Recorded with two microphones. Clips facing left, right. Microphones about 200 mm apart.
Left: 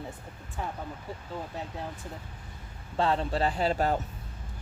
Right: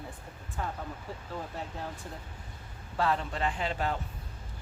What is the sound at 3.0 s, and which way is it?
Speech, 30° left (ahead or behind).